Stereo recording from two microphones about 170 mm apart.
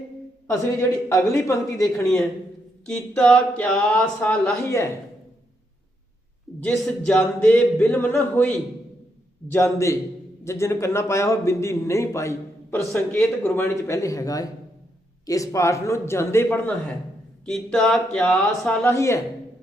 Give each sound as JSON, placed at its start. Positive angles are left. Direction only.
{"t": 0.4, "sound": "a man's voice", "side_deg": 15}
{"t": 2.8, "sound": "a man's voice", "side_deg": 5}
{"t": 6.7, "sound": "a man's voice", "side_deg": 5}
{"t": 9.7, "sound": "a man's voice", "side_deg": 15}